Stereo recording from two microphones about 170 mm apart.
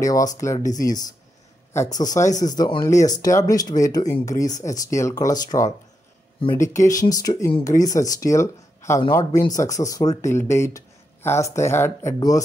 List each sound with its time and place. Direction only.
0.0 s speech: 20° left (ahead or behind)